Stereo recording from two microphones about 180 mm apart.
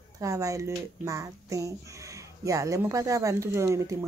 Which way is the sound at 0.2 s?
15° right (ahead or behind).